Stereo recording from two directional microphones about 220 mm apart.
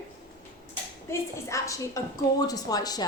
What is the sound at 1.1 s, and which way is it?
A woman's voice, 15° left (ahead or behind).